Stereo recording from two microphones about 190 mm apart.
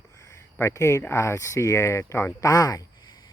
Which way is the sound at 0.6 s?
15° left (ahead or behind).